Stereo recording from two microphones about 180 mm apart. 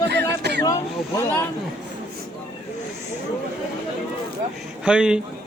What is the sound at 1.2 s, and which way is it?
Speech, 10° left (ahead or behind).